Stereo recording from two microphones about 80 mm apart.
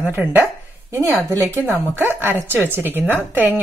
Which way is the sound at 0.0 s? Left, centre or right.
Right.